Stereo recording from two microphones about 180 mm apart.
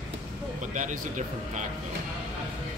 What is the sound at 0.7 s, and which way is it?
Speech, 45° right (ahead or behind).